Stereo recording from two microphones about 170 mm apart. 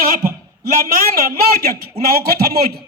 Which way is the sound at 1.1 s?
60° right (ahead or behind).